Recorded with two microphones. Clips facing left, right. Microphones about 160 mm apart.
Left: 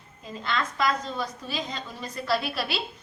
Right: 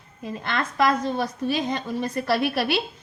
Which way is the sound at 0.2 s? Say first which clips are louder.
Right 2 dB; 55° right (ahead or behind).